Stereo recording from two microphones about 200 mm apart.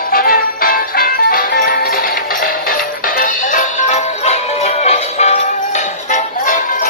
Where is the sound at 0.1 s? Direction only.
45° left (ahead or behind).